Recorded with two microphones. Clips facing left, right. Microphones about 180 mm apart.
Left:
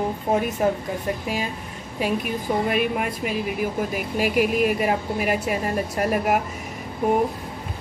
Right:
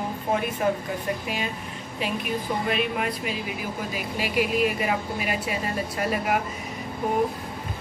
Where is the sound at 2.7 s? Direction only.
50° left (ahead or behind).